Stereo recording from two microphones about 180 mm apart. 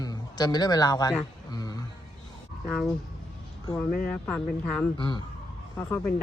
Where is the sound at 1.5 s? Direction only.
20° left (ahead or behind).